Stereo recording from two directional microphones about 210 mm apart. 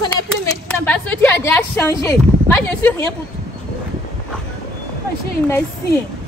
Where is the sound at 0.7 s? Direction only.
10° left (ahead or behind).